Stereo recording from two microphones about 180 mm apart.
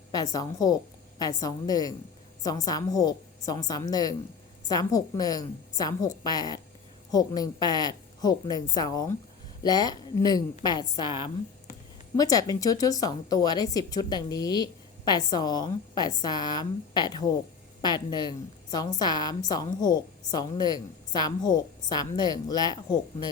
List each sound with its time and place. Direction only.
0.1 s speech: 20° left (ahead or behind)